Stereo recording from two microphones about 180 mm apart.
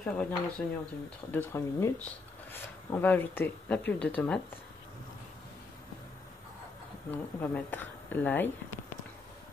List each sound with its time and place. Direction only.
0.0 s speech: 5° left (ahead or behind)
7.1 s speech: 10° left (ahead or behind)